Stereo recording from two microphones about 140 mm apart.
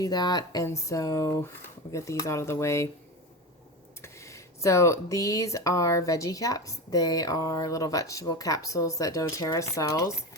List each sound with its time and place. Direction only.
0.0 s speech: 30° left (ahead or behind)
4.0 s speech: 20° left (ahead or behind)